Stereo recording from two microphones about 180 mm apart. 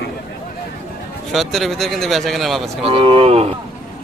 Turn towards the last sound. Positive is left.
turn(degrees=-35)  # may be behind; listen again after turning